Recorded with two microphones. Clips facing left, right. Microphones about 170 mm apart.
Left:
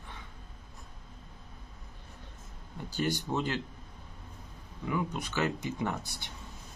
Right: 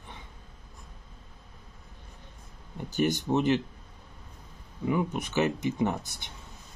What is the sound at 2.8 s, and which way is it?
Speech, 20° right (ahead or behind).